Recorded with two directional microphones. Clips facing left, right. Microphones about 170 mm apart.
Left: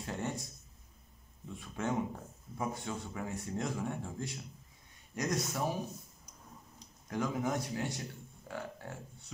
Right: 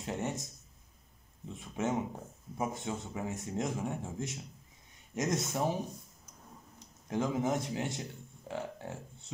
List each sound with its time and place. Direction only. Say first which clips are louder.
0.0 s speech: right 2 dB; 20° right (ahead or behind)
1.5 s speech: right 2 dB; 20° right (ahead or behind)
7.1 s speech: right 3 dB; 20° right (ahead or behind)